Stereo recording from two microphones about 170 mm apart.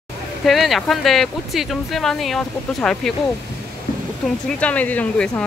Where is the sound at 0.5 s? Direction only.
Centre (ahead or behind).